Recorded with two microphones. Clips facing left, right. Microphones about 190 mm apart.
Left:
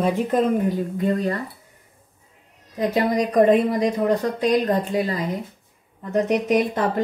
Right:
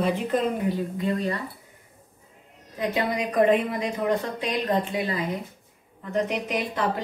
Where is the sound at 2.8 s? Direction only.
40° left (ahead or behind).